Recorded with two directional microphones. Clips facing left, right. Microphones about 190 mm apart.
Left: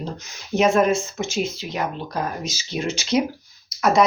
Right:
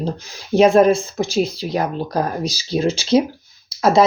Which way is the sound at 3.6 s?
30° right (ahead or behind).